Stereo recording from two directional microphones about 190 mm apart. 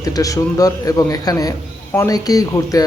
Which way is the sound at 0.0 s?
20° left (ahead or behind).